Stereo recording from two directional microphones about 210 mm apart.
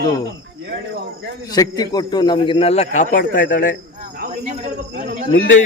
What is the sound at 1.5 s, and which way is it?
A man's voice, 20° left (ahead or behind).